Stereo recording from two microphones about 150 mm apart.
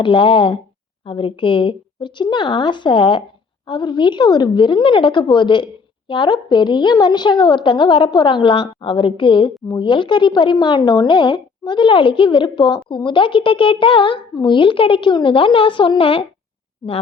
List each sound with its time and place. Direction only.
0.0 s a woman's voice: 35° left (ahead or behind)